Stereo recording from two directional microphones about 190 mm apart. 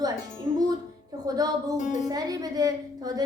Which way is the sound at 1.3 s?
20° right (ahead or behind).